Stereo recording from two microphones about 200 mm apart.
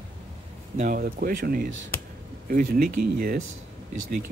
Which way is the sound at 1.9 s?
10° left (ahead or behind).